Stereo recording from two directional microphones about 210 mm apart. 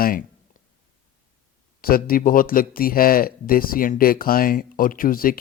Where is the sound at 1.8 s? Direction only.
45° left (ahead or behind).